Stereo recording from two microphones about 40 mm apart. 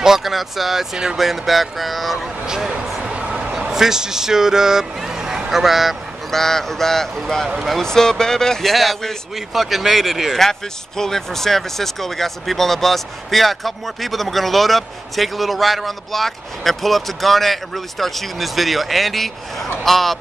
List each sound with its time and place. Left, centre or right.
0.0 s speech: centre
2.4 s speech: centre
3.0 s a sound: right
3.7 s speech: centre
5.5 s speech: centre
6.3 s speech: centre
8.7 s speech: centre
11.0 s speech: centre